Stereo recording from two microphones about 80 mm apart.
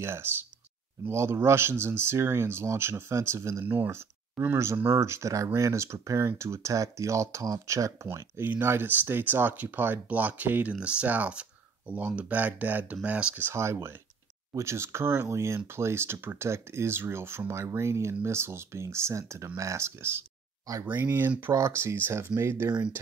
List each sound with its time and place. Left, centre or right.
0.0 s speech: right
13.5 s speech: right